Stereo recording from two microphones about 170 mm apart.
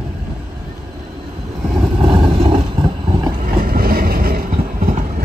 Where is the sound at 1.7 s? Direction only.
30° right (ahead or behind).